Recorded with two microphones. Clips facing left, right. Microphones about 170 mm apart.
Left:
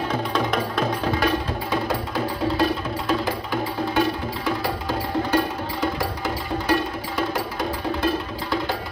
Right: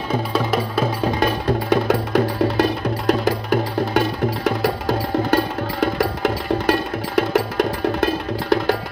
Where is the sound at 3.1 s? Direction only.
75° right (ahead or behind).